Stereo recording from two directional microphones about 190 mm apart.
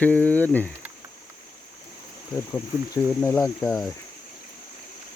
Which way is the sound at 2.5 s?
10° left (ahead or behind).